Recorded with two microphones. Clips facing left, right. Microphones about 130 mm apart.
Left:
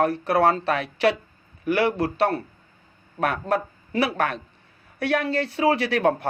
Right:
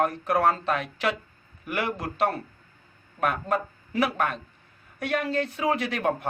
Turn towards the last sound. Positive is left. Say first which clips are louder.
# left 5 dB
turn(degrees=75)  # may be behind; listen again after turning